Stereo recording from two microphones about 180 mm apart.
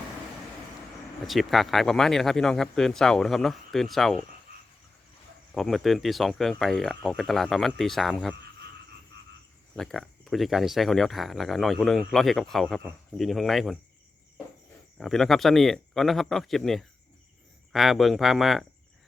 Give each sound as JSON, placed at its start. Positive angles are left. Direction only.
{"t": 1.2, "sound": "speech", "side_deg": 0}
{"t": 5.5, "sound": "speech", "side_deg": 0}
{"t": 9.7, "sound": "speech", "side_deg": 5}
{"t": 14.9, "sound": "speech", "side_deg": 0}